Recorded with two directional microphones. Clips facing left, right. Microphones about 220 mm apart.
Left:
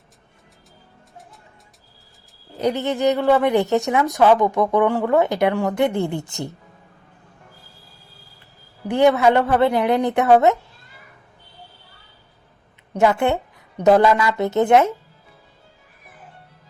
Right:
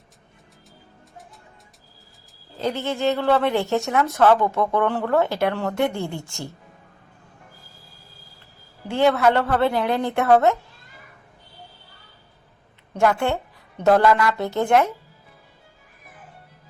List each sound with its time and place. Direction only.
2.5 s speech: 20° left (ahead or behind)
8.9 s speech: 15° left (ahead or behind)
12.9 s a woman's voice: 20° left (ahead or behind)